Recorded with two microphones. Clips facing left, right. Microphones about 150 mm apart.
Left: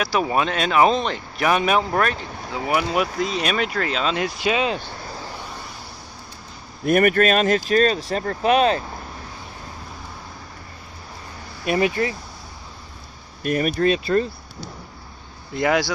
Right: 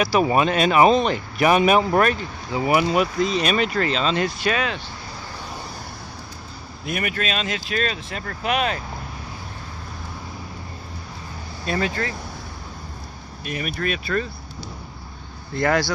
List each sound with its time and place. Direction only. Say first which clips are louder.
0.0 s speech: right 3 dB; 5° right (ahead or behind); by 4.6 s 15° left (ahead or behind)
6.8 s speech: left 10 dB; 50° left (ahead or behind); by 8.8 s 30° left (ahead or behind)
11.6 s speech: left 4 dB; 15° left (ahead or behind)
13.4 s speech: left 8 dB; 45° left (ahead or behind)
13.8 s speech: left 5 dB; 25° left (ahead or behind)
15.5 s speech: even; 10° left (ahead or behind)